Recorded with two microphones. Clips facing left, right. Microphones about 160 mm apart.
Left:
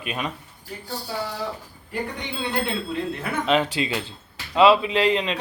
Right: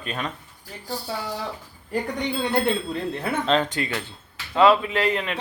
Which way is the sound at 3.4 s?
10° left (ahead or behind).